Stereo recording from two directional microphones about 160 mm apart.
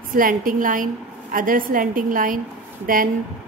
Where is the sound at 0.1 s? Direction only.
60° right (ahead or behind).